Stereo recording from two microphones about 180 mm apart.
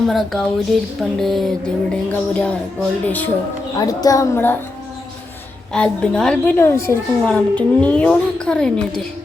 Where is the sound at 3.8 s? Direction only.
20° left (ahead or behind).